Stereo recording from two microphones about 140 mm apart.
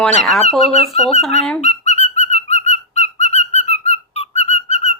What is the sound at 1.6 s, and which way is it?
Whistling, 55° left (ahead or behind).